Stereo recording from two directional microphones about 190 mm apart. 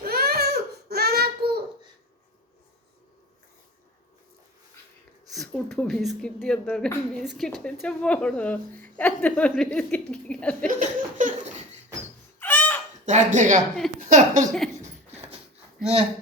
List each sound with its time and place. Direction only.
0.0 s baby cry: 55° right (ahead or behind)
5.3 s a woman's voice: centre (ahead or behind)
10.7 s laughter: 45° right (ahead or behind)
12.4 s a sound: 10° left (ahead or behind)
13.1 s speech: 40° right (ahead or behind)